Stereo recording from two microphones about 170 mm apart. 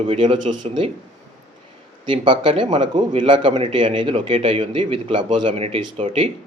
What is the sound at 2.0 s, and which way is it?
A man's voice, 30° right (ahead or behind).